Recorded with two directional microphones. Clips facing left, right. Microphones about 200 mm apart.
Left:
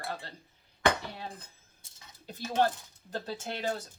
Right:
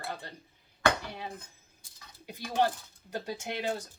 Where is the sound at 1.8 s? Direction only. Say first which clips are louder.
Right 1 dB; 25° left (ahead or behind).